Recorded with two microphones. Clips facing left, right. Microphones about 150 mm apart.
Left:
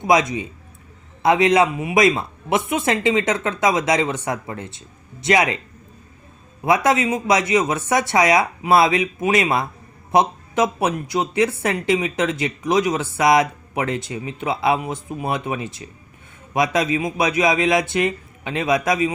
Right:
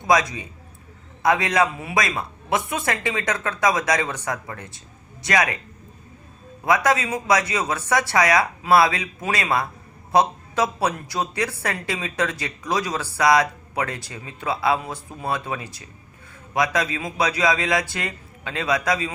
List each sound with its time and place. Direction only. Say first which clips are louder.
0.1 s speech: left 2 dB; 20° left (ahead or behind)
6.7 s speech: left 3 dB; 25° left (ahead or behind)